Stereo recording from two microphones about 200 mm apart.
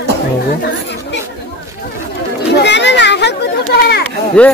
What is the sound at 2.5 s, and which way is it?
Children playing, 60° left (ahead or behind).